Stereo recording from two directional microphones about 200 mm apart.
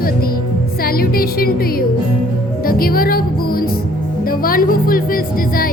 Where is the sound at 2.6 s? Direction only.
45° left (ahead or behind).